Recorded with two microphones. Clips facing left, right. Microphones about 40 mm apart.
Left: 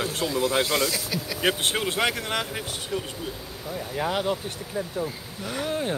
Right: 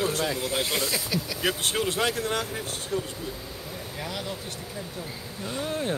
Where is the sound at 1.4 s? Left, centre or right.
Left.